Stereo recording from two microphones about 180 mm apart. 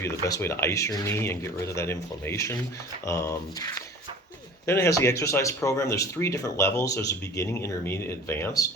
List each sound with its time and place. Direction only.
0.0 s speech: 15° left (ahead or behind)